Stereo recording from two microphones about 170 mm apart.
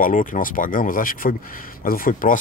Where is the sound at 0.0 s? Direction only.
50° left (ahead or behind).